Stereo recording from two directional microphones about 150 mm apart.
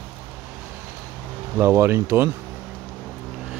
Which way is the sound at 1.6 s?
15° right (ahead or behind).